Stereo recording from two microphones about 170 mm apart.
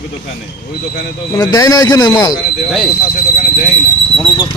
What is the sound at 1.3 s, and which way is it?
Speech, 20° left (ahead or behind).